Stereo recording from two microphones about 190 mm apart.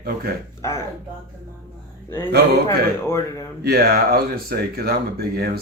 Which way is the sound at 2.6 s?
15° left (ahead or behind).